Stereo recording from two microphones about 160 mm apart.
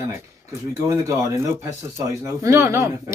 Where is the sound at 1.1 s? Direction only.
20° right (ahead or behind).